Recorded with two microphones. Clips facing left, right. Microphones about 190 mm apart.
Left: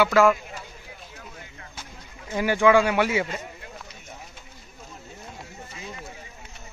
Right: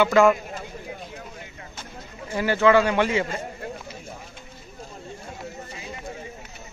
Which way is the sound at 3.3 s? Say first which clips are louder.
Right 4 dB; 50° right (ahead or behind).